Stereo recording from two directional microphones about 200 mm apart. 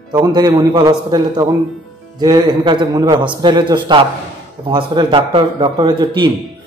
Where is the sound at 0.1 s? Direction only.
20° right (ahead or behind).